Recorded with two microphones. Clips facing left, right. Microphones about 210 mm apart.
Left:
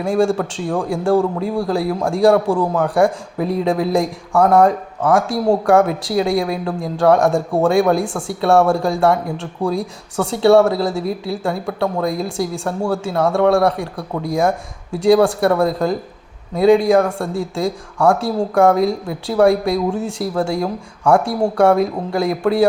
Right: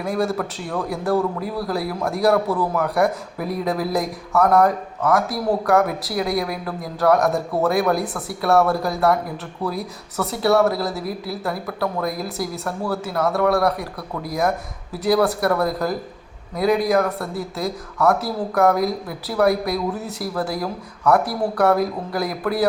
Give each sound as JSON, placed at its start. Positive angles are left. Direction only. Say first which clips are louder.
{"t": 0.0, "sound": "a man's voice", "louder": "left 6 dB", "side_deg": 30}